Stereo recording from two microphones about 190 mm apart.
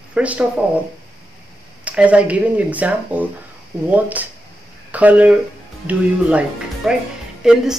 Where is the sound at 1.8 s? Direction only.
5° right (ahead or behind).